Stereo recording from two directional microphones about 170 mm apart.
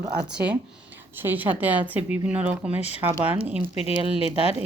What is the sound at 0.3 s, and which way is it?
Speech, 5° right (ahead or behind).